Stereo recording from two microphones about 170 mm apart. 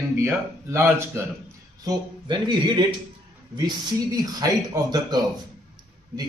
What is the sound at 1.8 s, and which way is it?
Speech, 25° right (ahead or behind).